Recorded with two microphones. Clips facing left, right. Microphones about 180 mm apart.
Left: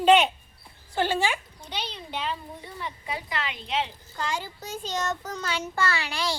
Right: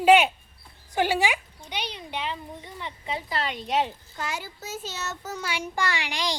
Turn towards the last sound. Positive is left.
turn(degrees=-15)  # may be behind; listen again after turning